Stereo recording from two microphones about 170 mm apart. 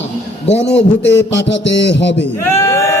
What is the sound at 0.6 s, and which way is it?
A man's voice, 90° left.